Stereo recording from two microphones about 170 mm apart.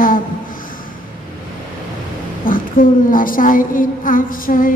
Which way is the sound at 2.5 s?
55° left (ahead or behind).